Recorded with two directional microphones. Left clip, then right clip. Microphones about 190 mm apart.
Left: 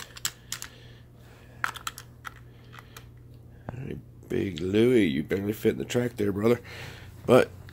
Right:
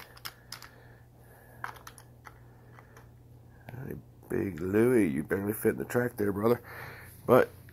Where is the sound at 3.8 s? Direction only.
15° left (ahead or behind).